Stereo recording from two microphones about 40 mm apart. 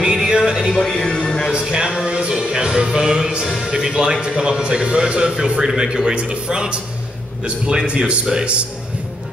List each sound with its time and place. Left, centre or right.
0.0 s a sound: centre
1.0 s music: centre
1.5 s music: centre
2.9 s a man's voice: centre